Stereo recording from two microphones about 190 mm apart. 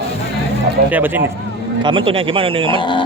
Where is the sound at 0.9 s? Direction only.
10° right (ahead or behind).